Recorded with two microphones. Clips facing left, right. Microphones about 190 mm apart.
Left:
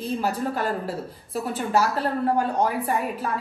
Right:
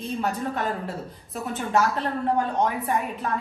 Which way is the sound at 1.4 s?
35° left (ahead or behind).